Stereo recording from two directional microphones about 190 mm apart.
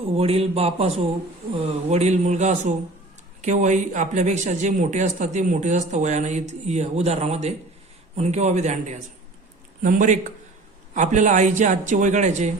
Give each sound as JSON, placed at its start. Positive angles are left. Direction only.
{"t": 0.2, "sound": "speech", "side_deg": -30}